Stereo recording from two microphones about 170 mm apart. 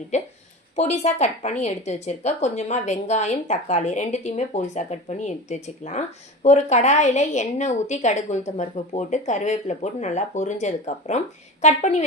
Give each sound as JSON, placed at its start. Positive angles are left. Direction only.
{"t": 0.1, "sound": "a woman's voice", "side_deg": 40}